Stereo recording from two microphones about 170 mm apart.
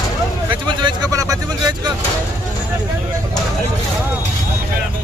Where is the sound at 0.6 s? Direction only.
25° right (ahead or behind).